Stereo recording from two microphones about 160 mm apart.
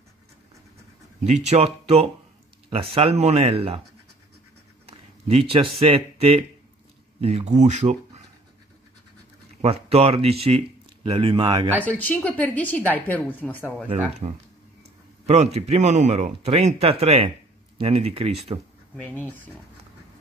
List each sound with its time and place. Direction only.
1.2 s speech: 45° right (ahead or behind)
4.8 s a man's voice: 35° right (ahead or behind)
9.6 s speech: 40° right (ahead or behind)
11.8 s a woman's voice: 10° left (ahead or behind)
14.2 s speech: 30° right (ahead or behind)
15.2 s a man's voice: 45° right (ahead or behind)